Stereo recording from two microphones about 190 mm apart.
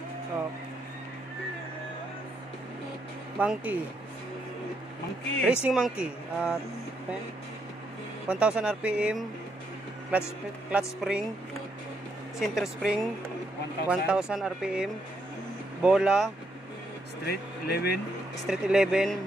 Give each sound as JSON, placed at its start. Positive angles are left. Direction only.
{"t": 3.3, "sound": "speech", "side_deg": -10}
{"t": 5.5, "sound": "speech", "side_deg": -5}
{"t": 8.3, "sound": "speech", "side_deg": -5}
{"t": 12.4, "sound": "speech", "side_deg": 0}
{"t": 17.3, "sound": "speech", "side_deg": 60}
{"t": 18.5, "sound": "speech", "side_deg": -5}